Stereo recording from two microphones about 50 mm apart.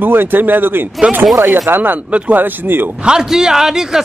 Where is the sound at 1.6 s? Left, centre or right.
Right.